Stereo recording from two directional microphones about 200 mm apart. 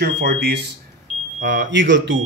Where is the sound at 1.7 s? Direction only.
65° right (ahead or behind).